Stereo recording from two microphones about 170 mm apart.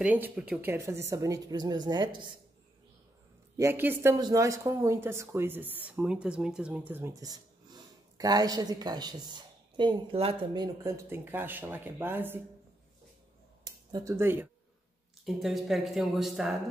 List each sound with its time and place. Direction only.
0.0 s a woman's voice: 10° right (ahead or behind); by 2.3 s 25° right (ahead or behind)
3.5 s speech: 15° right (ahead or behind)
13.9 s speech: 15° right (ahead or behind)
15.2 s speech: centre (ahead or behind)